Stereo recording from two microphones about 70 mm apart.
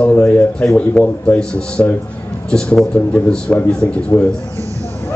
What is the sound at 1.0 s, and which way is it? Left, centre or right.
Speech, centre.